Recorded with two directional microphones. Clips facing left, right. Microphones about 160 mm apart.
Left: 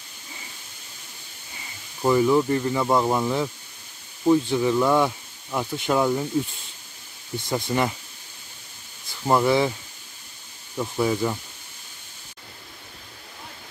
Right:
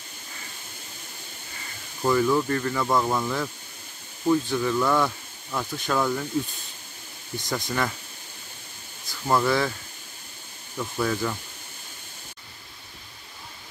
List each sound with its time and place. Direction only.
2.0 s speech: 20° left (ahead or behind)
7.3 s speech: 25° left (ahead or behind)
9.3 s speech: 20° left (ahead or behind)
10.8 s speech: 15° left (ahead or behind)